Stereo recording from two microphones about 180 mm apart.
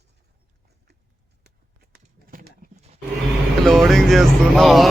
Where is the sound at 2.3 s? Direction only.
50° right (ahead or behind).